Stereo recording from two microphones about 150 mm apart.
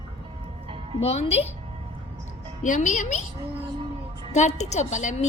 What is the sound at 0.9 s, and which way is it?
Speech, 45° left (ahead or behind).